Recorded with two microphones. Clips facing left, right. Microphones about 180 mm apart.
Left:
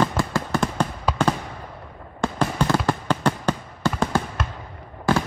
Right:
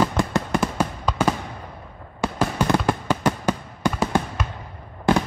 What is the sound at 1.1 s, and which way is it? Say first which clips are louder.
Fireworks: left 1 dB; 10° left (ahead or behind).